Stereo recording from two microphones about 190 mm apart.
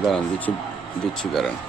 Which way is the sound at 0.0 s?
Centre (ahead or behind).